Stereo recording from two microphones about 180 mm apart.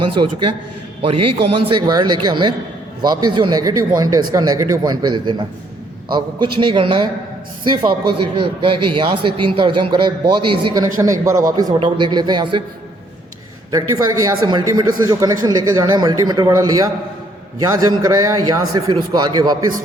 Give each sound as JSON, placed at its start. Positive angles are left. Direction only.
{"t": 0.0, "sound": "a man's voice", "side_deg": -25}
{"t": 1.5, "sound": "a man's voice", "side_deg": -30}
{"t": 13.7, "sound": "a man's voice", "side_deg": -20}